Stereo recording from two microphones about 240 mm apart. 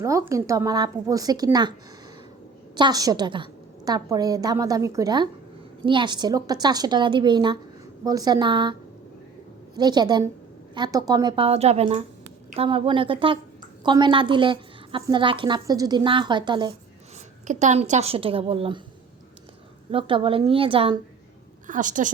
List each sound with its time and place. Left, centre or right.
0.0 s a woman's voice: centre
2.7 s a woman's voice: centre
9.7 s a woman's voice: centre
17.4 s a woman's voice: right
19.9 s a woman's voice: right
21.7 s a woman's voice: right